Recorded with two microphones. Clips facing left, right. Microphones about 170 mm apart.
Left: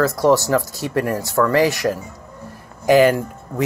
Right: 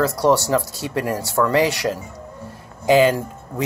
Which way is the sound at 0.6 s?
20° left (ahead or behind).